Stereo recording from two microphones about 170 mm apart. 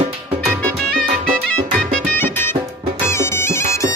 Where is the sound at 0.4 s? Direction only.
Centre (ahead or behind).